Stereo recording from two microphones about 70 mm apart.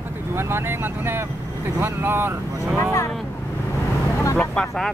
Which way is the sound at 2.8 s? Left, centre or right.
Left.